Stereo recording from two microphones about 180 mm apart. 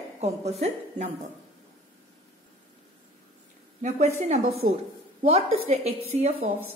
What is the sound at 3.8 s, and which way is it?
Speech, 40° right (ahead or behind).